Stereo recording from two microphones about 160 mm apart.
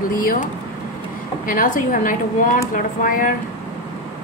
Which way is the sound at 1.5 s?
55° left (ahead or behind).